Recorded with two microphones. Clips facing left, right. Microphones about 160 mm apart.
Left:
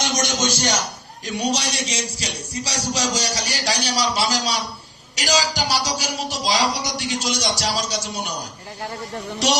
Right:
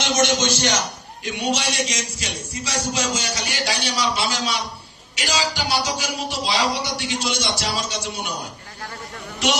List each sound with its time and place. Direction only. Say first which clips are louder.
0.0 s a man's voice: right 3 dB; 40° left (ahead or behind)
1.9 s music: left 1 dB; 35° left (ahead or behind)